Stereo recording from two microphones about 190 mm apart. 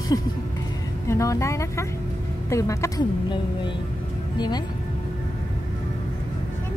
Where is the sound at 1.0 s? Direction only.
15° left (ahead or behind).